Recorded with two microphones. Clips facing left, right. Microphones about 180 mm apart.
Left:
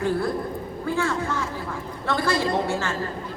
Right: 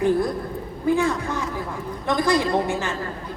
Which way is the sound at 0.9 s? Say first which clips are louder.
Right 4 dB; 15° right (ahead or behind).